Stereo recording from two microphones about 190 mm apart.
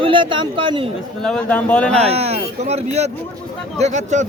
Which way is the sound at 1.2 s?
5° left (ahead or behind).